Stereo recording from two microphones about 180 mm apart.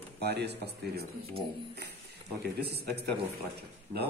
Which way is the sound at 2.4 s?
65° right (ahead or behind).